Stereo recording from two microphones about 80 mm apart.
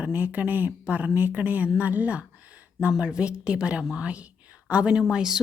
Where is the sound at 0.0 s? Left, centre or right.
Centre.